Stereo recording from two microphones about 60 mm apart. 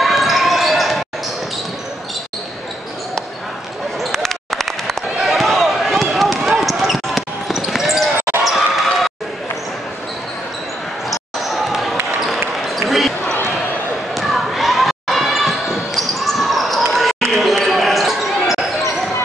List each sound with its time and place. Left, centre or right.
0.0 s basketball bounce: centre
4.0 s basketball bounce: centre
11.1 s basketball bounce: centre
14.1 s basketball bounce: centre